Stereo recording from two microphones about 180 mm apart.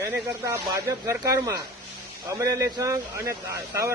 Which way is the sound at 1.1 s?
15° right (ahead or behind).